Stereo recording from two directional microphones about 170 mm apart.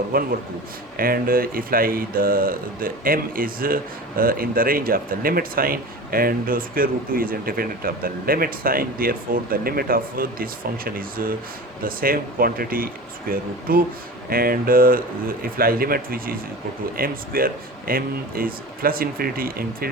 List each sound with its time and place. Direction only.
0.1 s speech: 60° right (ahead or behind)